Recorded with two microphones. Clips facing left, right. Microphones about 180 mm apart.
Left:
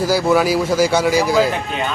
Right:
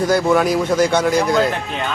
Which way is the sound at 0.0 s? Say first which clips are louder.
Even; 5° left (ahead or behind).